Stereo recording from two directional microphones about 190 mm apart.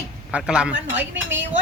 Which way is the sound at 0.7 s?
70° right (ahead or behind).